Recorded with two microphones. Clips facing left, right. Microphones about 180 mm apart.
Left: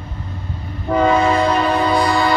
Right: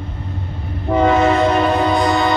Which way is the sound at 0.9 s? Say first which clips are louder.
Right 1 dB; 20° right (ahead or behind).